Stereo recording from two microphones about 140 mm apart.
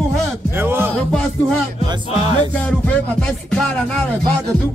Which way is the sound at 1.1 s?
5° left (ahead or behind).